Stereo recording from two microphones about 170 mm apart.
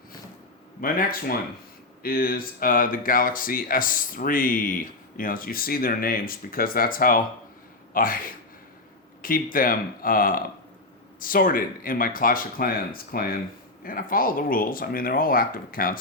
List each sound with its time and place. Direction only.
0.8 s speech: 55° left (ahead or behind)